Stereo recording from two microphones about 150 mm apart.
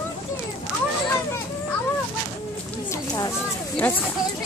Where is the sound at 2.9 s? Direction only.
20° left (ahead or behind).